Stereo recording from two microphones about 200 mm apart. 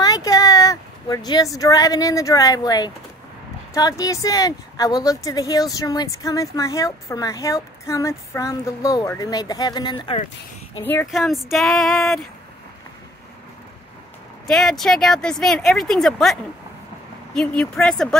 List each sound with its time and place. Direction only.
0.0 s a sound: 15° left (ahead or behind)
1.6 s a woman's voice: 20° left (ahead or behind)
10.8 s speech: 10° left (ahead or behind)
11.1 s a woman's voice: centre (ahead or behind)
14.5 s a woman's voice: centre (ahead or behind)